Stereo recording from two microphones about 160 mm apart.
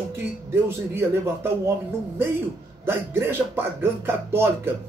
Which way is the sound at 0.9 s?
15° right (ahead or behind).